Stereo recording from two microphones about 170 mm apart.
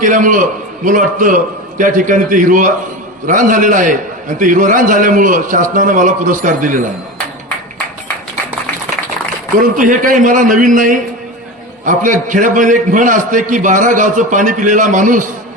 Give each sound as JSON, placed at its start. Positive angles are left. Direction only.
{"t": 0.0, "sound": "a man's voice", "side_deg": -50}
{"t": 9.6, "sound": "a man's voice", "side_deg": -50}